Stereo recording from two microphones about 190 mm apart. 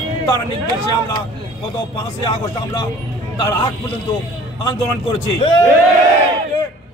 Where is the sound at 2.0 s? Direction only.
20° left (ahead or behind).